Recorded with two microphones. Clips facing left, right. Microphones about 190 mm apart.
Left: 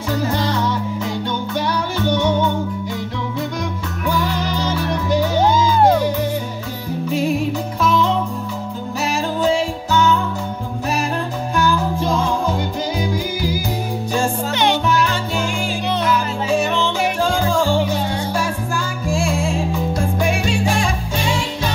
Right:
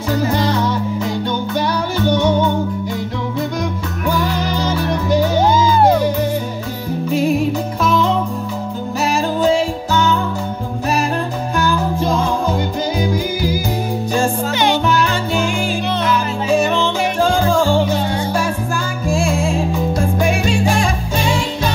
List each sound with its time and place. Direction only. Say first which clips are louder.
1.5 s music: right 2 dB; 40° right (ahead or behind)
4.0 s music: right 2 dB; 45° right (ahead or behind)
5.5 s music: right 1 dB; 5° right (ahead or behind)
7.8 s music: right 1 dB; 40° right (ahead or behind)
11.5 s music: even; 40° right (ahead or behind)
14.5 s music: even; centre (ahead or behind)
14.9 s music: right 2 dB; 65° right (ahead or behind)
16.5 s music: right 3 dB; 45° right (ahead or behind)
19.0 s music: right 3 dB; 45° right (ahead or behind)
20.2 s salsa music: right 2 dB; 45° right (ahead or behind)